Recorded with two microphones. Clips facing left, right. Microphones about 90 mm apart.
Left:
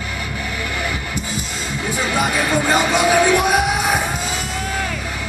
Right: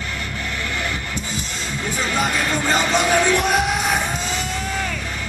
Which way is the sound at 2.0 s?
10° left (ahead or behind).